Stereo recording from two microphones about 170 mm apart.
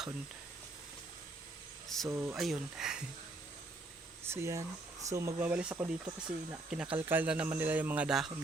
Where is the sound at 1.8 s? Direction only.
Centre (ahead or behind).